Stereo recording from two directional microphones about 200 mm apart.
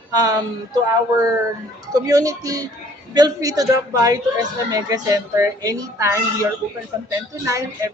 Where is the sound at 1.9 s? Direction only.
15° right (ahead or behind).